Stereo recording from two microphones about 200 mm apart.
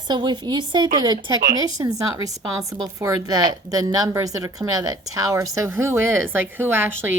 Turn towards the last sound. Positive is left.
turn(degrees=-10)  # may be behind; listen again after turning